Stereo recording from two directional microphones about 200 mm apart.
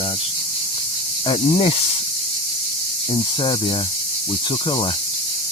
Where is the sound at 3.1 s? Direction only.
25° left (ahead or behind).